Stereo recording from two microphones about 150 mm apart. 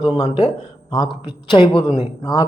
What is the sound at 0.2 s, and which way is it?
Speech, 40° left (ahead or behind).